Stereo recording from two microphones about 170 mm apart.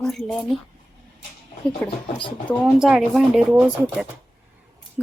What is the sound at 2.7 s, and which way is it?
Speech, 5° right (ahead or behind).